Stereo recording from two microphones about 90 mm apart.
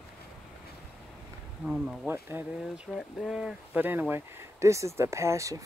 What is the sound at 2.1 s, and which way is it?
Speech, 25° right (ahead or behind).